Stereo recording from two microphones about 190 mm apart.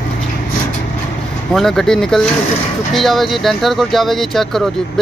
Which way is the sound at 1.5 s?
Centre (ahead or behind).